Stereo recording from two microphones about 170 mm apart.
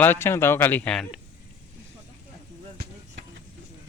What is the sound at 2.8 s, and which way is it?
Vehicle, 85° right.